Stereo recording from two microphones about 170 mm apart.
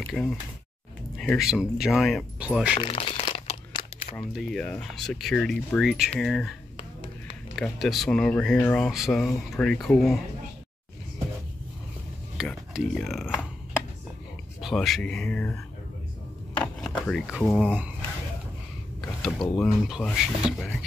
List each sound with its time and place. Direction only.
0.0 s speech: centre (ahead or behind)
2.8 s crumpling: 30° left (ahead or behind)
4.2 s speech: centre (ahead or behind)
7.5 s speech: centre (ahead or behind)
12.4 s speech: centre (ahead or behind)
14.6 s speech: centre (ahead or behind)
16.9 s a sound: 5° left (ahead or behind)
17.3 s speech: centre (ahead or behind)
18.9 s speech: centre (ahead or behind)